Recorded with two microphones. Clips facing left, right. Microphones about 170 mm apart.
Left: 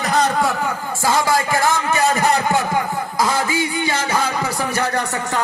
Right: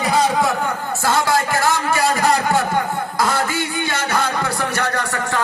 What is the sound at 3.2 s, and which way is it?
A man's voice, 10° left (ahead or behind).